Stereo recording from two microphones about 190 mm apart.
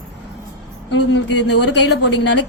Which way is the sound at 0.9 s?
65° left (ahead or behind).